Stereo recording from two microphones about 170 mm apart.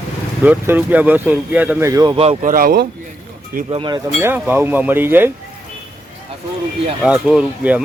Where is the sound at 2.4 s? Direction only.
55° right (ahead or behind).